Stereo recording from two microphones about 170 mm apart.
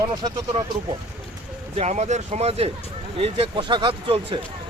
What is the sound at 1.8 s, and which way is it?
Speech, 45° right (ahead or behind).